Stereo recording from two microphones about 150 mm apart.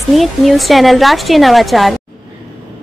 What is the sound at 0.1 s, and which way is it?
Speech, centre (ahead or behind).